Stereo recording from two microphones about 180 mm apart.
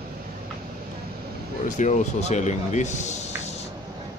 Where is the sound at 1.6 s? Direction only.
45° left (ahead or behind).